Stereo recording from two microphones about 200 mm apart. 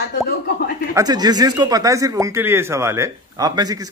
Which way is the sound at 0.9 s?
20° right (ahead or behind).